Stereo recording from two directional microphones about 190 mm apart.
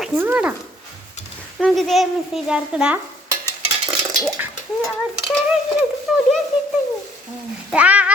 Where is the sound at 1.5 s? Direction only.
Centre (ahead or behind).